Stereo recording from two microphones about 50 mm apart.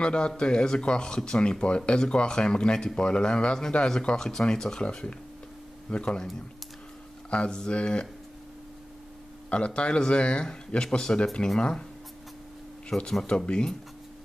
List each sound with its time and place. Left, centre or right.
0.0 s speech: centre
7.2 s speech: left
9.8 s speech: centre
12.9 s speech: centre
13.5 s speech: centre